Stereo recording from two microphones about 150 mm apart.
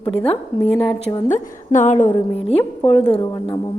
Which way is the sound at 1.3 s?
55° left (ahead or behind).